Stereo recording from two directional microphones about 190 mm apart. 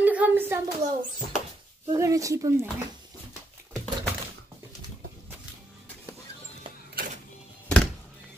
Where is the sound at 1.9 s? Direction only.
15° right (ahead or behind).